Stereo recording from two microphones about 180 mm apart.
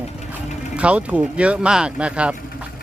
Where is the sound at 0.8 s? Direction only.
5° right (ahead or behind).